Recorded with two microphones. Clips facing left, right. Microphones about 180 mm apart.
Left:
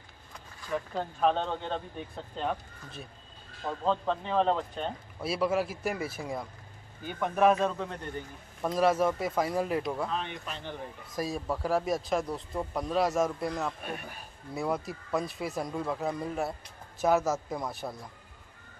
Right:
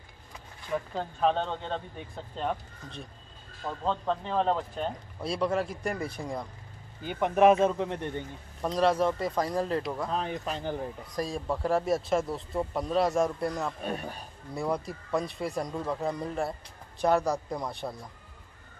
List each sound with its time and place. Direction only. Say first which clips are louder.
0.9 s speech: even; centre (ahead or behind)
7.1 s speech: right 3 dB; 20° right (ahead or behind)
8.6 s speech: even; 5° left (ahead or behind)
10.1 s speech: right 4 dB; 40° right (ahead or behind)
11.1 s speech: right 1 dB; 5° left (ahead or behind)
13.8 s speech: right 5 dB; 35° right (ahead or behind)
14.5 s speech: right 1 dB; centre (ahead or behind)